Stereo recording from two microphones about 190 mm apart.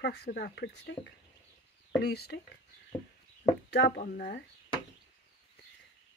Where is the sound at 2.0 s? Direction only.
55° left (ahead or behind).